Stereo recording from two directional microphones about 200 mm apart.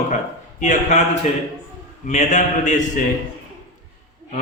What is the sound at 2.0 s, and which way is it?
Mantra, 35° left (ahead or behind).